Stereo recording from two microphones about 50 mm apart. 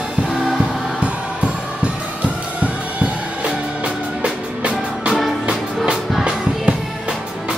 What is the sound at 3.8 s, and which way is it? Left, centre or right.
Music, right.